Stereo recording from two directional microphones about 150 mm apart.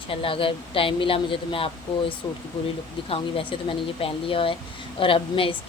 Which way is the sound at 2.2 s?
25° left (ahead or behind).